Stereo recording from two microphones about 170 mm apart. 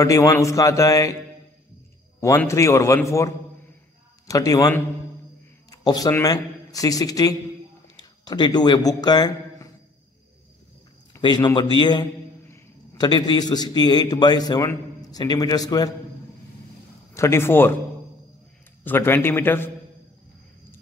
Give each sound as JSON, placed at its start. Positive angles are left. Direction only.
{"t": 0.0, "sound": "a man's voice", "side_deg": 20}
{"t": 2.1, "sound": "a man's voice", "side_deg": 15}
{"t": 11.1, "sound": "a man's voice", "side_deg": 25}
{"t": 17.1, "sound": "a man's voice", "side_deg": 15}
{"t": 18.9, "sound": "a man's voice", "side_deg": 15}